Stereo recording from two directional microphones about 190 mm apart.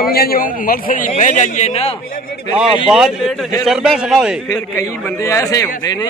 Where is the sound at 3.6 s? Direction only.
Centre (ahead or behind).